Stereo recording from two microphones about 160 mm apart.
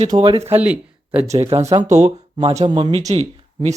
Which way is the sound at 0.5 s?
10° right (ahead or behind).